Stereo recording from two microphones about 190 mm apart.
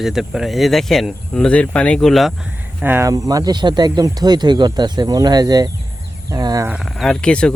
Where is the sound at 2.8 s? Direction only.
10° right (ahead or behind).